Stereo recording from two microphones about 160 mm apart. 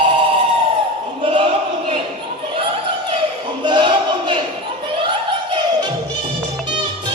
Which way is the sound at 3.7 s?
30° right (ahead or behind).